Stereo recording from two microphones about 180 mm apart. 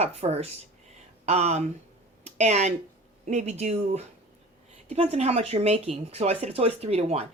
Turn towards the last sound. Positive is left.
turn(degrees=-35)  # may be behind; listen again after turning